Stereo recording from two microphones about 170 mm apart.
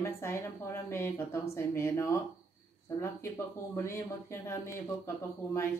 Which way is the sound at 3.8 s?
15° left (ahead or behind).